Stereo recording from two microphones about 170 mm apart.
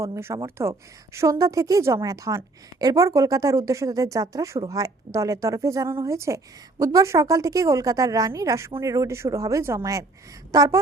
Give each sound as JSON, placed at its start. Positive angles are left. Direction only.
{"t": 0.0, "sound": "a woman's voice", "side_deg": -15}